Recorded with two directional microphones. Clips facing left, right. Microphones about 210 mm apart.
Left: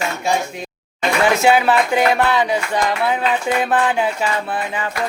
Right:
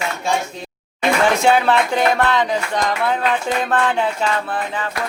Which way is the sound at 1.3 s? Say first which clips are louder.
Left 2 dB; 5° left (ahead or behind).